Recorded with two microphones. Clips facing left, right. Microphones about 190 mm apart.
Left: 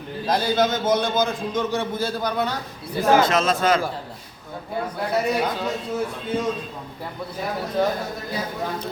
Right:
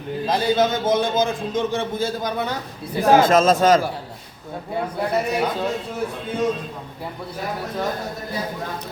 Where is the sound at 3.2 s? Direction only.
45° right (ahead or behind).